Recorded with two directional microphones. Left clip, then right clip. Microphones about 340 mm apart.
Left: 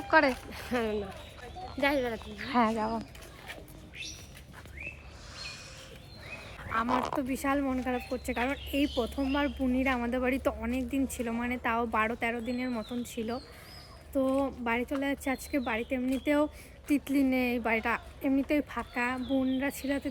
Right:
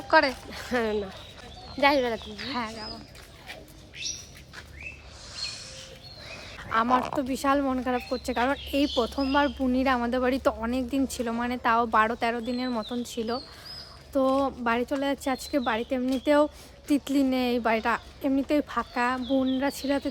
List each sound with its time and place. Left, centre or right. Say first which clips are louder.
0.1 s speech: right 3 dB; centre
1.8 s speech: right 6 dB; centre
2.5 s speech: left 6 dB; centre
5.3 s snort: right 7 dB; centre
6.6 s a sound: right 6 dB; right
7.2 s speech: right 5 dB; centre